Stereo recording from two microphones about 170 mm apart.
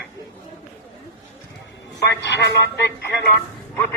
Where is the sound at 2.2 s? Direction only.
90° left.